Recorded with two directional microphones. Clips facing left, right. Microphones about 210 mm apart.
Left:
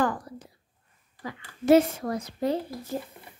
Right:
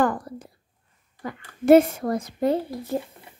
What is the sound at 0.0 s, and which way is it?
A child's voice, 55° right (ahead or behind).